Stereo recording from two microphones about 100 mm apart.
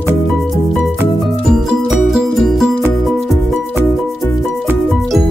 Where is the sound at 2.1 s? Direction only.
5° right (ahead or behind).